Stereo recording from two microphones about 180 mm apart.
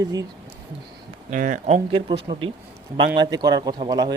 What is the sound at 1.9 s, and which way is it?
Speech, 30° right (ahead or behind).